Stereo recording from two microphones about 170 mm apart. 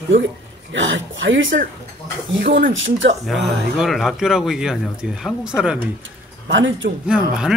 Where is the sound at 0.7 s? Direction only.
90° right.